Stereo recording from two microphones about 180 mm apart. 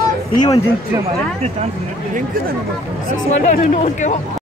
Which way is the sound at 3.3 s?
35° left (ahead or behind).